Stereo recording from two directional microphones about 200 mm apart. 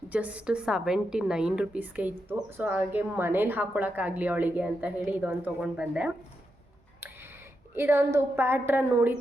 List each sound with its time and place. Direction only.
0.1 s a woman's voice: 5° right (ahead or behind)
7.7 s a woman's voice: 10° right (ahead or behind)